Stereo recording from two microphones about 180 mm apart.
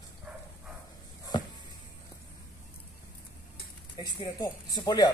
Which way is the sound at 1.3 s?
25° left (ahead or behind).